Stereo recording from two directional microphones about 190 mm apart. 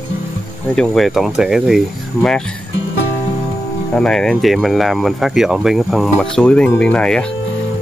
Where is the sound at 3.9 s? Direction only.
5° left (ahead or behind).